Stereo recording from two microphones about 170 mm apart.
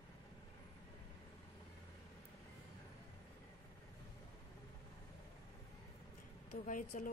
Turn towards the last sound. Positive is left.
turn(degrees=50)  # may be behind; listen again after turning